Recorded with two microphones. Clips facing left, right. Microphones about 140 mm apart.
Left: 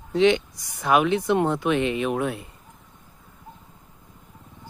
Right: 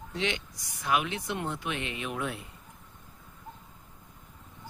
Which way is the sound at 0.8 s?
70° left (ahead or behind).